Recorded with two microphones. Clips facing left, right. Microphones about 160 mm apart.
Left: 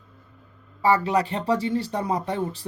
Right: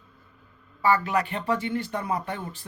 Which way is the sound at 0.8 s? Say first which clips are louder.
Left 3 dB; 30° left (ahead or behind).